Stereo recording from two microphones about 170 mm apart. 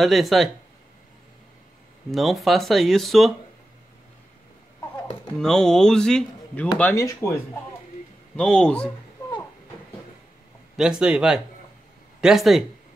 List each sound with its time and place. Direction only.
0.0 s speech: centre (ahead or behind)
2.0 s speech: centre (ahead or behind)
5.4 s speech: 5° left (ahead or behind)
8.4 s speech: 5° left (ahead or behind)
10.8 s speech: 5° right (ahead or behind)